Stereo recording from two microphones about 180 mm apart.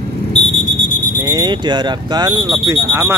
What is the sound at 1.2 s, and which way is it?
Speech, 20° right (ahead or behind).